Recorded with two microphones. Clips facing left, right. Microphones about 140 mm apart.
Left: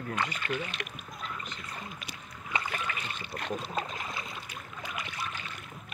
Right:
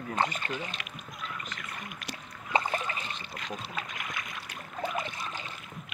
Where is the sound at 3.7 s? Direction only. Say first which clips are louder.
Left 3 dB; 30° left (ahead or behind).